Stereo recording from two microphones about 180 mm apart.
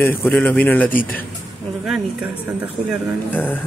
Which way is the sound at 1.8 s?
5° right (ahead or behind).